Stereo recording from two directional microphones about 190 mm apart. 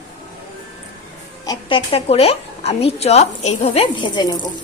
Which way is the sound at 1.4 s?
25° left (ahead or behind).